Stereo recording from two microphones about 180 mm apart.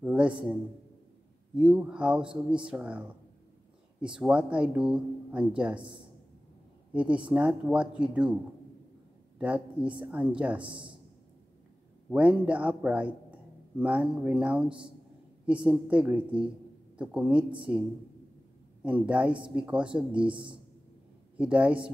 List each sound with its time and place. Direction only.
0.0 s a man's voice: 5° right (ahead or behind)
1.5 s speech: 5° right (ahead or behind)
6.9 s speech: 5° right (ahead or behind)
9.4 s speech: 10° right (ahead or behind)
10.6 s speech: 30° right (ahead or behind)
12.1 s a man's voice: 5° right (ahead or behind)
20.2 s speech: 30° right (ahead or behind)
21.4 s speech: 5° right (ahead or behind)